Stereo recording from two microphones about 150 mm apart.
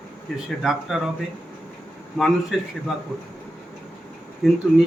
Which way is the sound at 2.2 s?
Centre (ahead or behind).